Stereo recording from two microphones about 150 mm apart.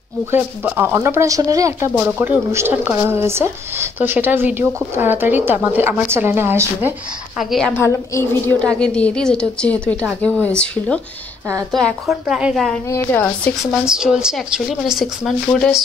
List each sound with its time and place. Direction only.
0.3 s speech: 15° right (ahead or behind)
7.3 s speech: 5° left (ahead or behind)
7.8 s a woman's voice: 15° left (ahead or behind)
11.7 s speech: centre (ahead or behind)
12.9 s a woman's voice: 15° left (ahead or behind)
13.6 s speech: 5° right (ahead or behind)